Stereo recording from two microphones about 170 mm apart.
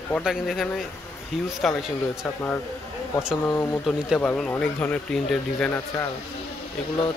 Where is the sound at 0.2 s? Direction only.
Centre (ahead or behind).